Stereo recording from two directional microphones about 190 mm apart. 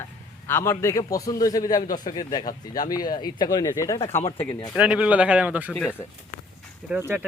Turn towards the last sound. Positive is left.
turn(degrees=-10)  # may be behind; listen again after turning